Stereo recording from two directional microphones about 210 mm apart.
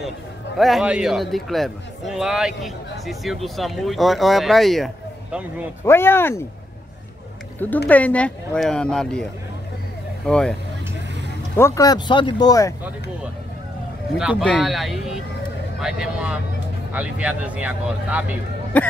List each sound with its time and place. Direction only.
0.6 s a man's voice: centre (ahead or behind)
5.9 s speech: 10° left (ahead or behind)
7.5 s a man's voice: 10° left (ahead or behind)
11.5 s speech: 15° left (ahead or behind)
14.1 s a man's voice: 5° right (ahead or behind)